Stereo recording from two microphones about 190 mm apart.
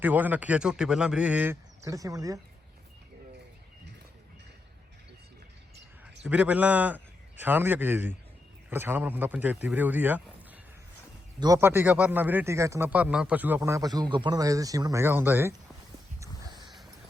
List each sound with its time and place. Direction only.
0.0 s a man's voice: 10° right (ahead or behind)
6.2 s a man's voice: 5° right (ahead or behind)
11.3 s a man's voice: 15° right (ahead or behind)
16.2 s a sound: 25° right (ahead or behind)